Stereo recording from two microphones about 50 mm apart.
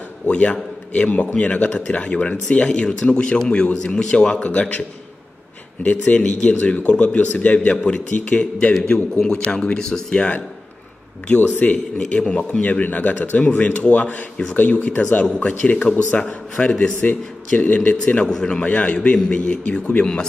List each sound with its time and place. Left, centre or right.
0.3 s a man's voice: left
4.5 s a man's voice: left
6.1 s a man's voice: left
11.2 s a man's voice: left
12.8 s a man's voice: left